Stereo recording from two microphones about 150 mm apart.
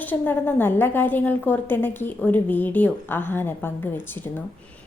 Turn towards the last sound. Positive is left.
turn(degrees=15)  # may be behind; listen again after turning